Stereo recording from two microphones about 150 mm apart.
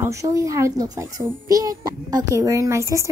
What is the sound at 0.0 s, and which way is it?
A woman's voice, 20° right (ahead or behind).